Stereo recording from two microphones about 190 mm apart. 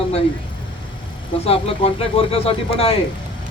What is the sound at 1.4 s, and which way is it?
Speech, 30° left (ahead or behind).